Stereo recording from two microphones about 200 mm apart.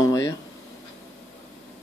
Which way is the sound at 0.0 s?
20° left (ahead or behind).